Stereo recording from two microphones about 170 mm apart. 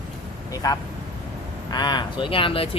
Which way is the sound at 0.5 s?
20° left (ahead or behind).